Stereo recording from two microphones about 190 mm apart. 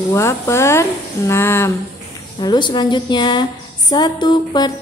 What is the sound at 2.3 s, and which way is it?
A woman's voice, 25° left (ahead or behind).